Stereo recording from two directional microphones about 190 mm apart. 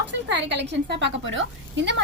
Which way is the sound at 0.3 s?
65° right (ahead or behind).